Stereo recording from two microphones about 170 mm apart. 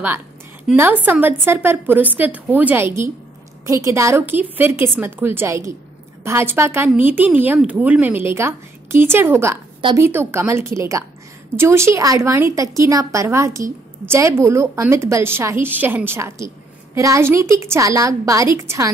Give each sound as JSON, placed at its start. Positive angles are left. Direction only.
{"t": 0.7, "sound": "a woman's voice", "side_deg": -10}
{"t": 9.8, "sound": "speech", "side_deg": -30}
{"t": 10.0, "sound": "a woman's voice", "side_deg": -15}